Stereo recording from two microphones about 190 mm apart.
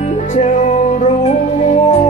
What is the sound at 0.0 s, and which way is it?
Music, 40° left (ahead or behind).